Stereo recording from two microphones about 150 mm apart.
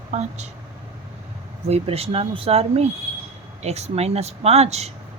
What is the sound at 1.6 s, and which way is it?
Speech, 45° right (ahead or behind).